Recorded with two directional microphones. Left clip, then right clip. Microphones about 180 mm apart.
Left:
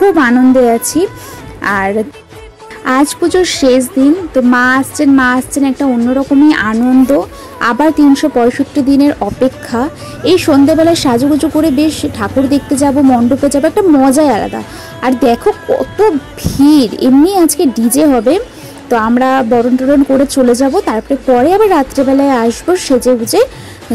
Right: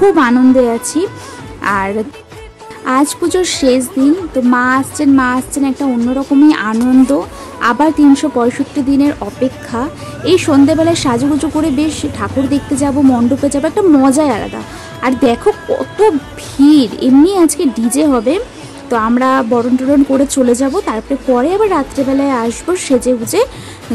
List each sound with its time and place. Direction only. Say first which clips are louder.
0.1 s speech: left 1 dB; 5° left (ahead or behind)
5.9 s speech: left 3 dB; centre (ahead or behind)
6.4 s speech: right 1 dB; 15° left (ahead or behind)
15.4 s speech: left 2 dB; 5° left (ahead or behind)